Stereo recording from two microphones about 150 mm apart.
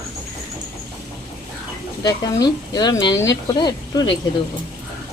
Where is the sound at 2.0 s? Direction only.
25° left (ahead or behind).